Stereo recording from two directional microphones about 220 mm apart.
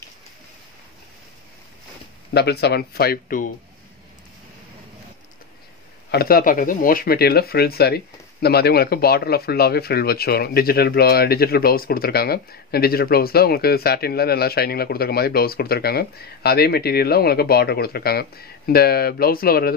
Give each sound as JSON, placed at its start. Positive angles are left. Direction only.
{"t": 2.3, "sound": "speech", "side_deg": 50}
{"t": 6.1, "sound": "speech", "side_deg": 45}